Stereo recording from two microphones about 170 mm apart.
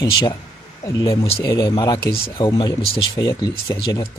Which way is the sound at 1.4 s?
20° left (ahead or behind).